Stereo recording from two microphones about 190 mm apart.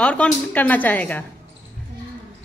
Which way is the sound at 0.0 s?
5° left (ahead or behind).